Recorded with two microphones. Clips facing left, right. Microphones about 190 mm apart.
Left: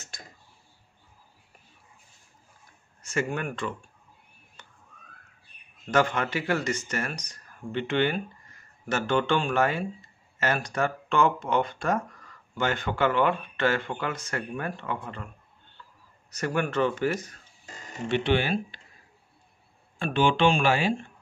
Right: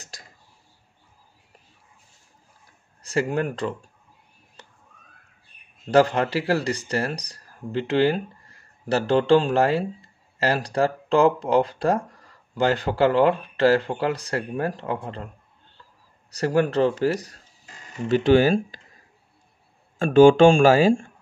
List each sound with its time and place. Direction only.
0.1 s tick-tock: 35° right (ahead or behind)
3.0 s speech: 35° right (ahead or behind)
5.9 s a man's voice: 35° right (ahead or behind)
20.0 s speech: 45° right (ahead or behind)